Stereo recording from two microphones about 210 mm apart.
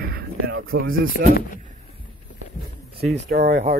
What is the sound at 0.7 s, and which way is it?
Speech, 40° right (ahead or behind).